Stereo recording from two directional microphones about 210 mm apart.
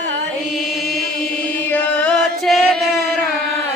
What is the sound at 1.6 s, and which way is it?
Chant, 5° left (ahead or behind).